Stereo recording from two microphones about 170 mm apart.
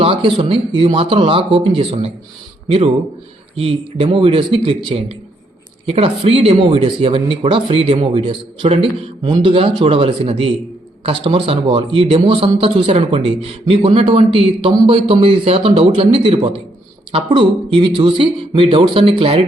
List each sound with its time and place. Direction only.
0.0 s speech: 30° right (ahead or behind)